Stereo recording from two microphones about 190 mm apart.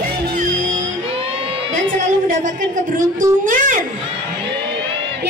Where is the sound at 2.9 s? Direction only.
45° right (ahead or behind).